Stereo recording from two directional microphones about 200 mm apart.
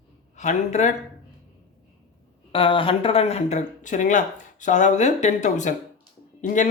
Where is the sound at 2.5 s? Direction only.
25° left (ahead or behind).